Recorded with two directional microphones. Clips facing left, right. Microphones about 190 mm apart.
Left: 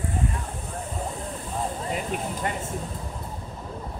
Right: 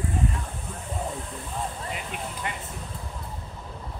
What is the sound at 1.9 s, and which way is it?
Vehicle, 40° left (ahead or behind).